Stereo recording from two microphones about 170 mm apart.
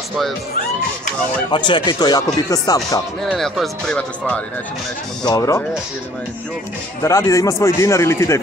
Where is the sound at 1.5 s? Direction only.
25° left (ahead or behind).